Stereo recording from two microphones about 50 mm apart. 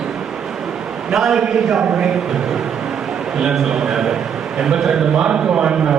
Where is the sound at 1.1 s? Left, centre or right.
Centre.